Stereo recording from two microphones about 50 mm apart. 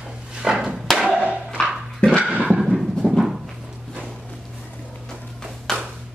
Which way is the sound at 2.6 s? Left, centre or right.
Centre.